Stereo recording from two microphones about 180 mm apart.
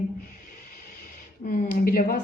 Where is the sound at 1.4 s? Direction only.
50° left (ahead or behind).